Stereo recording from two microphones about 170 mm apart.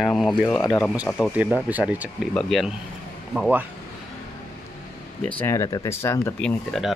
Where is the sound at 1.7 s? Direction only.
10° right (ahead or behind).